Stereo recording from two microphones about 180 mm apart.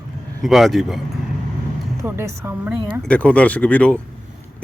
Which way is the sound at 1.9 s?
15° right (ahead or behind).